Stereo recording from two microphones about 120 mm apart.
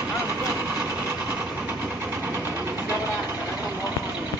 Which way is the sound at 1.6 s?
20° right (ahead or behind).